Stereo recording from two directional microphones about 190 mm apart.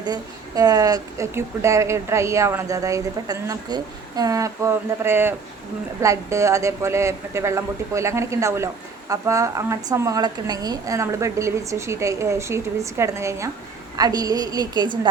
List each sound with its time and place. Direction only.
0.0 s a woman's voice: 20° right (ahead or behind)